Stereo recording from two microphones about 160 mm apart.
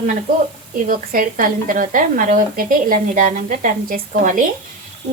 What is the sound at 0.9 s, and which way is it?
Speech, 60° right (ahead or behind).